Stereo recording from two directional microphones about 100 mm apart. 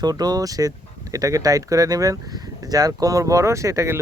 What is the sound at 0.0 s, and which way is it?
Speech, 40° right (ahead or behind).